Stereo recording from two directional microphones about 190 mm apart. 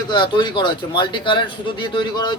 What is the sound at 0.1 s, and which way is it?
A man's voice, 25° left (ahead or behind).